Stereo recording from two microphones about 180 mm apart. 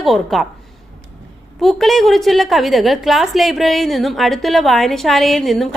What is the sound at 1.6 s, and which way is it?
A woman's voice, centre (ahead or behind).